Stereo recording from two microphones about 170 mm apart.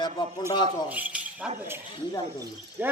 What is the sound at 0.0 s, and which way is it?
Speech, 25° left (ahead or behind).